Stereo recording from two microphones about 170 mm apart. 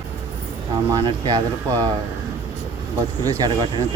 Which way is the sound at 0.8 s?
25° right (ahead or behind).